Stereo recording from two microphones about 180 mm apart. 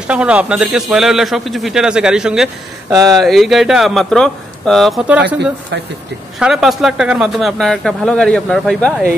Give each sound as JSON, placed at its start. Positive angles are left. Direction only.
{"t": 0.0, "sound": "speech", "side_deg": -5}
{"t": 2.9, "sound": "speech", "side_deg": -20}
{"t": 3.2, "sound": "speech", "side_deg": 0}
{"t": 6.4, "sound": "speech", "side_deg": 0}